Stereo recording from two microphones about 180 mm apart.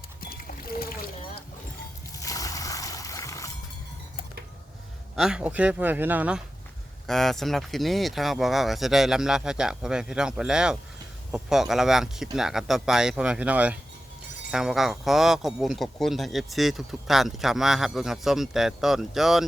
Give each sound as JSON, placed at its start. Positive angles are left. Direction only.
{"t": 0.2, "sound": "trickle", "side_deg": 55}
{"t": 2.1, "sound": "a sound", "side_deg": 20}
{"t": 5.1, "sound": "speech", "side_deg": -5}